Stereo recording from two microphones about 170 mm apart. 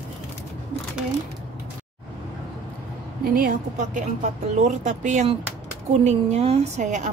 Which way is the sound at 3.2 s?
60° right (ahead or behind).